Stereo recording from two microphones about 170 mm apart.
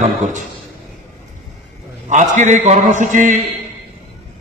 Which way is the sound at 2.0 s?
45° right (ahead or behind).